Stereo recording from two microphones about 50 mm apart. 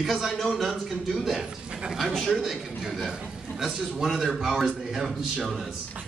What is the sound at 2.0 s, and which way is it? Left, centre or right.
A man's voice, centre.